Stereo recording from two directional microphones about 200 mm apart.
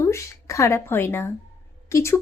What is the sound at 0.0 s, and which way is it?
A woman's voice, 15° left (ahead or behind).